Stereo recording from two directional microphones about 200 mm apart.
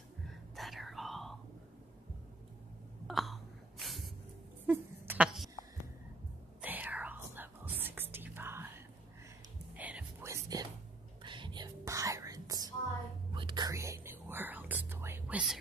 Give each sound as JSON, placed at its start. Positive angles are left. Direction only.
{"t": 0.3, "sound": "whispering", "side_deg": 0}
{"t": 3.1, "sound": "hiccup", "side_deg": 0}
{"t": 4.6, "sound": "a sound", "side_deg": -10}
{"t": 6.6, "sound": "whispering", "side_deg": -10}